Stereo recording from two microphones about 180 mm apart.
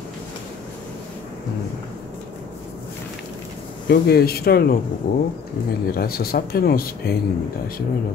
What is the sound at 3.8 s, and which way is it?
Speech, 60° left (ahead or behind).